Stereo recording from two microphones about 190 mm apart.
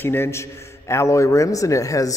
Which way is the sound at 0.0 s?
10° left (ahead or behind).